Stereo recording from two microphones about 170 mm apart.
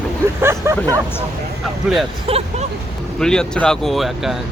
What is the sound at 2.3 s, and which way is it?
Speech, 35° right (ahead or behind).